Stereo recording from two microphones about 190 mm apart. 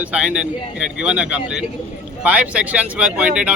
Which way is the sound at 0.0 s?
5° right (ahead or behind).